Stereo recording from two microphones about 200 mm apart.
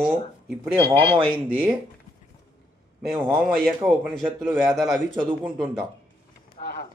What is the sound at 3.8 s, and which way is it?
A man's voice, 5° right (ahead or behind).